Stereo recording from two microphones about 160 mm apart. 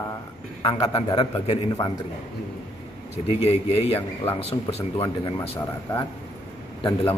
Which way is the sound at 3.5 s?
40° left (ahead or behind).